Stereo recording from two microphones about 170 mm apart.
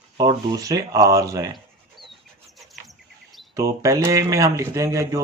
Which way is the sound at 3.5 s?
20° right (ahead or behind).